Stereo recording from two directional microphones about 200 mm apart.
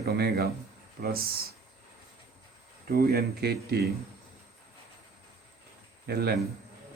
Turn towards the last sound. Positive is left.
turn(degrees=-55)  # may be behind; listen again after turning